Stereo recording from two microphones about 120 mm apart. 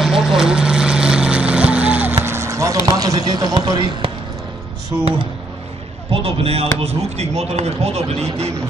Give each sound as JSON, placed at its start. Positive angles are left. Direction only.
{"t": 0.0, "sound": "vehicle", "side_deg": -5}
{"t": 4.9, "sound": "speech", "side_deg": -40}
{"t": 6.0, "sound": "speech", "side_deg": -55}